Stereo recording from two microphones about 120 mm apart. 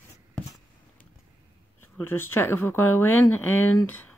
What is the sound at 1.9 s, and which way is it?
Speech, 20° left (ahead or behind).